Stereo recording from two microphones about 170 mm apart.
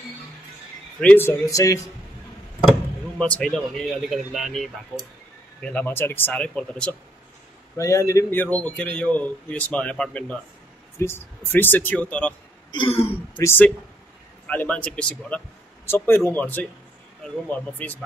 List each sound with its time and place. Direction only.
1.0 s a man's voice: 10° left (ahead or behind)
3.2 s a man's voice: 5° left (ahead or behind)
7.7 s a man's voice: 20° left (ahead or behind)
12.7 s speech: 30° left (ahead or behind)
13.4 s a man's voice: 15° left (ahead or behind)